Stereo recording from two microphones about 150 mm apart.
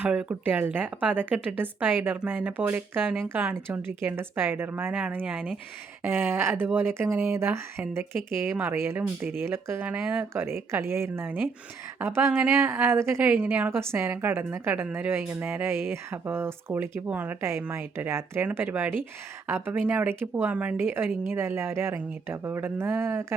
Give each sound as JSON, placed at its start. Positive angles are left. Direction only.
{"t": 0.0, "sound": "a woman's voice", "side_deg": -10}